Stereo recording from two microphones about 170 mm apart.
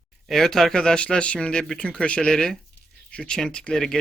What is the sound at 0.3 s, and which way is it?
Speech, centre (ahead or behind).